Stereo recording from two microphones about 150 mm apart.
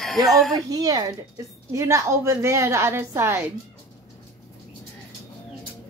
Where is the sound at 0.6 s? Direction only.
25° right (ahead or behind).